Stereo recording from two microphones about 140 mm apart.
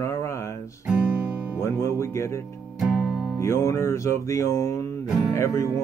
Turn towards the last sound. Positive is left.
turn(degrees=20)  # may be behind; listen again after turning